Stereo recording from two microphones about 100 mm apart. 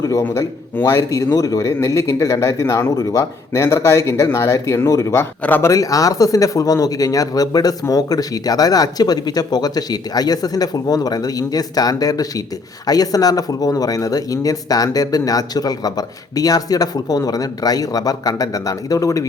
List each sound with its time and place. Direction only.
0.0 s a man's voice: 30° left (ahead or behind)
5.7 s speech: 35° left (ahead or behind)